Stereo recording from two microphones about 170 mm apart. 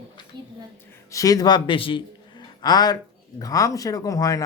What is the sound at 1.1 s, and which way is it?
A man's voice, 20° left (ahead or behind).